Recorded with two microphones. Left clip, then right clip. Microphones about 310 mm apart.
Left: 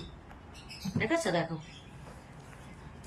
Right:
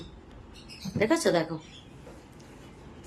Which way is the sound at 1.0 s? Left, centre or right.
Centre.